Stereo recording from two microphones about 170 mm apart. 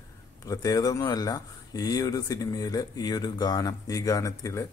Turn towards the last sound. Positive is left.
turn(degrees=20)  # may be behind; listen again after turning